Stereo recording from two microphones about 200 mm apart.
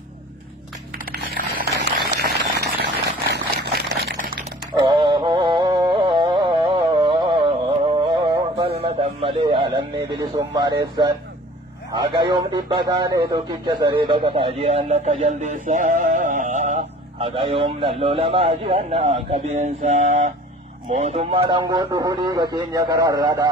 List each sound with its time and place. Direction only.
0.9 s a sound: 50° right (ahead or behind)
4.7 s music: 20° right (ahead or behind)
10.8 s a man's voice: 20° right (ahead or behind)